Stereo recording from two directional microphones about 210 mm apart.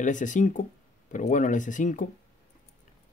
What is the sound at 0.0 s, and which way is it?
Speech, 35° left (ahead or behind).